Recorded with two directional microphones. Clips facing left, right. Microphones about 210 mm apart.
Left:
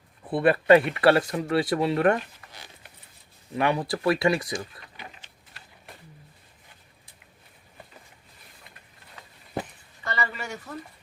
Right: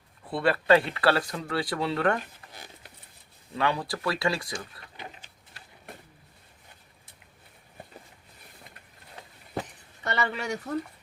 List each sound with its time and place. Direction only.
0.3 s speech: 20° left (ahead or behind)
3.5 s speech: 20° left (ahead or behind)
10.0 s a sound: 70° right (ahead or behind)